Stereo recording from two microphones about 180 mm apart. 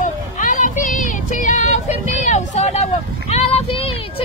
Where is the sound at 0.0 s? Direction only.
45° left (ahead or behind).